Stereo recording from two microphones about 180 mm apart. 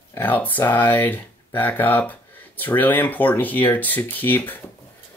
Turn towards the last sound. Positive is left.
turn(degrees=10)  # may be behind; listen again after turning